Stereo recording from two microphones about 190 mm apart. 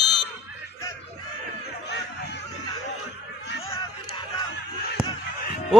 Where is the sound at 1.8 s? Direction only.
65° left (ahead or behind).